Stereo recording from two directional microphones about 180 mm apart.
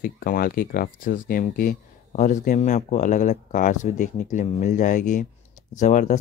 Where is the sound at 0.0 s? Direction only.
55° left (ahead or behind).